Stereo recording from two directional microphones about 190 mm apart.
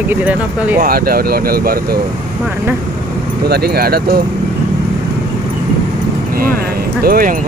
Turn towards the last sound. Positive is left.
turn(degrees=-50)  # may be behind; listen again after turning